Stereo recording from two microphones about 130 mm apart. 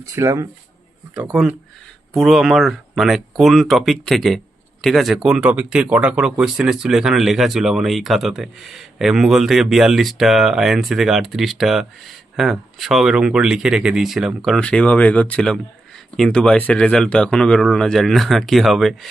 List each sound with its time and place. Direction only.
0.0 s speech: 25° right (ahead or behind)
1.1 s speech: 10° right (ahead or behind)